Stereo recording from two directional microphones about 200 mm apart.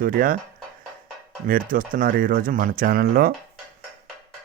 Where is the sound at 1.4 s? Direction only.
45° right (ahead or behind).